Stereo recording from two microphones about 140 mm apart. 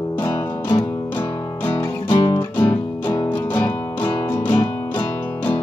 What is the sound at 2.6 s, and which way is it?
Music, 15° left (ahead or behind).